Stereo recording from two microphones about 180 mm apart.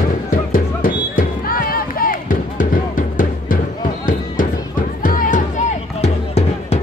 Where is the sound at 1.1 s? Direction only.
50° left (ahead or behind).